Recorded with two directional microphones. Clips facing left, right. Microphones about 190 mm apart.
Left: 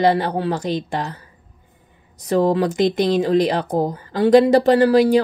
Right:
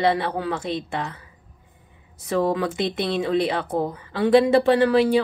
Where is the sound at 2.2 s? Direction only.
35° left (ahead or behind).